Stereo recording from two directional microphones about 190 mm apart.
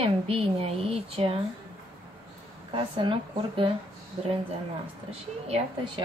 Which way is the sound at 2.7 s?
25° right (ahead or behind).